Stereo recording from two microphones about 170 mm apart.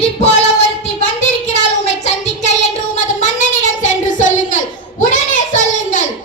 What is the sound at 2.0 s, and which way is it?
Child singing, 40° left (ahead or behind).